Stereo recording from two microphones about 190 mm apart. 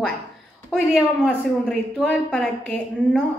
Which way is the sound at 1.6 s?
5° left (ahead or behind).